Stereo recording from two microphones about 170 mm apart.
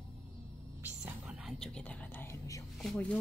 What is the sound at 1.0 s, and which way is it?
Whispering, 5° right (ahead or behind).